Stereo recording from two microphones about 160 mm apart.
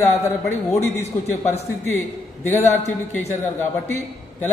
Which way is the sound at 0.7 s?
15° left (ahead or behind).